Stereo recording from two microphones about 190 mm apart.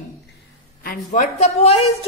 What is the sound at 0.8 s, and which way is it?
A woman's voice, 45° left (ahead or behind).